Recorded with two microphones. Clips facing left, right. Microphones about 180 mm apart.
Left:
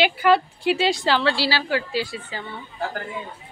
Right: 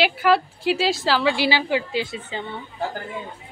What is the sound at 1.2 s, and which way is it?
A woman's voice, 15° right (ahead or behind).